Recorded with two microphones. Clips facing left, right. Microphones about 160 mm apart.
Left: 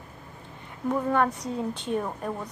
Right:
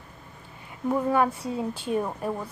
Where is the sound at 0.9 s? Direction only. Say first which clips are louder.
Right 1 dB; 5° right (ahead or behind).